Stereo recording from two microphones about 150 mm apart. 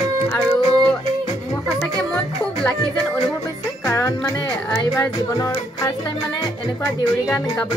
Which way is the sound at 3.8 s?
20° left (ahead or behind).